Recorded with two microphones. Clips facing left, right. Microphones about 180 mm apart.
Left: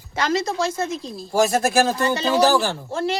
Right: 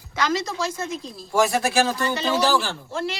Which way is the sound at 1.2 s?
35° left (ahead or behind).